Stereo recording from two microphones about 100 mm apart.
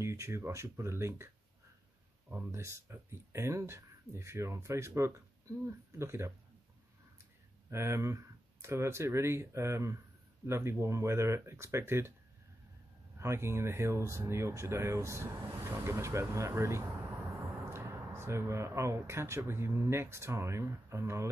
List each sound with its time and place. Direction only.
0.0 s speech: 30° right (ahead or behind)
2.3 s speech: 25° right (ahead or behind)
7.7 s speech: 25° right (ahead or behind)
13.2 s speech: 25° right (ahead or behind)